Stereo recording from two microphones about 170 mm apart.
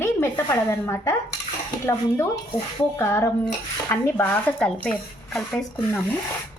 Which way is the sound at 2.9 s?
15° left (ahead or behind).